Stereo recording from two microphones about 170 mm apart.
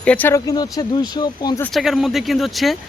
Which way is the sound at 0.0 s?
10° left (ahead or behind).